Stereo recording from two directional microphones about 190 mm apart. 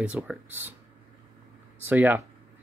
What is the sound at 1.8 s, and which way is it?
Speech, 10° right (ahead or behind).